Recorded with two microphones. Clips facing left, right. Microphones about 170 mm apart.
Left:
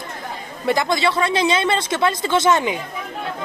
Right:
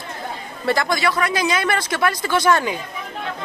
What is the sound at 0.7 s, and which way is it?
Speech, 20° left (ahead or behind).